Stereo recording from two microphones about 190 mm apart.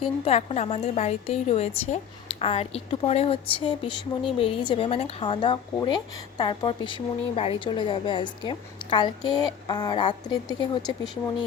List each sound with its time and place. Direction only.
0.0 s a woman's voice: 30° left (ahead or behind)